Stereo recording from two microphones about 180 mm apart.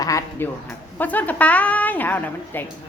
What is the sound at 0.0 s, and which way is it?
A woman's voice, 15° left (ahead or behind).